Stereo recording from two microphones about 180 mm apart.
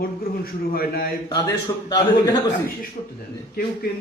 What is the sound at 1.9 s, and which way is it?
Speech, 20° left (ahead or behind).